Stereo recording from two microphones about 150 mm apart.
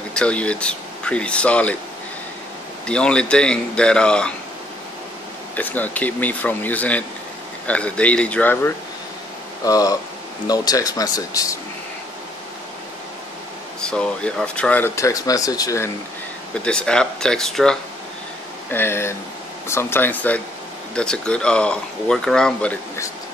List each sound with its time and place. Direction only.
0.1 s speech: 5° left (ahead or behind)
2.9 s speech: 5° left (ahead or behind)
5.6 s speech: 10° left (ahead or behind)
9.7 s speech: 25° left (ahead or behind)
13.7 s speech: 5° left (ahead or behind); by 15.9 s 20° left (ahead or behind)
16.5 s speech: 5° left (ahead or behind)
18.7 s speech: 15° left (ahead or behind)